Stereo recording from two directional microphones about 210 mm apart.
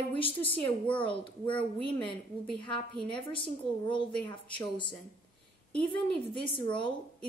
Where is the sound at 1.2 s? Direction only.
25° left (ahead or behind).